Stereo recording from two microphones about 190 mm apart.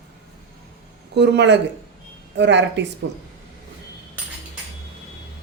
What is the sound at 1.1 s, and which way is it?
Speech, 65° right (ahead or behind).